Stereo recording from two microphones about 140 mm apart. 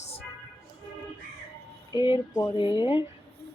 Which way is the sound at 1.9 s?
35° left (ahead or behind).